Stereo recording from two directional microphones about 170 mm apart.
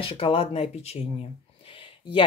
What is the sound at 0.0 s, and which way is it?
Speech, 35° left (ahead or behind).